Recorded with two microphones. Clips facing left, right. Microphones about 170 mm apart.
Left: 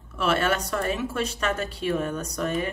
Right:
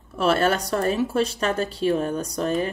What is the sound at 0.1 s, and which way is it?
Speech, 35° right (ahead or behind).